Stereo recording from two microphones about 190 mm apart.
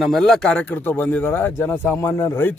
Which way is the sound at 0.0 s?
Centre (ahead or behind).